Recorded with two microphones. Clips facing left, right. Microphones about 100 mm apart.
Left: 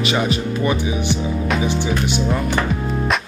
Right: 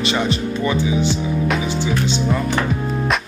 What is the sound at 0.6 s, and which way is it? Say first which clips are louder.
Speech: right 4 dB; 20° left (ahead or behind).